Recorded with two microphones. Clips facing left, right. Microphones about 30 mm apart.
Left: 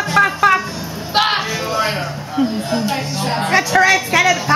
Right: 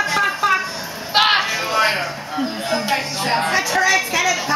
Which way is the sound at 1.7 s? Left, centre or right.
Right.